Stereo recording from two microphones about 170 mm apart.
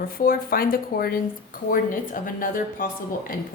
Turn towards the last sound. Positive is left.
turn(degrees=55)  # may be behind; listen again after turning